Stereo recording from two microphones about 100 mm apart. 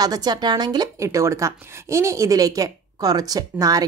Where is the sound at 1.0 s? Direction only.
30° right (ahead or behind).